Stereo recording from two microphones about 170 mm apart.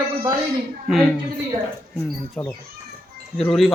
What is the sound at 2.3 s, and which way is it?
Speech, 5° left (ahead or behind).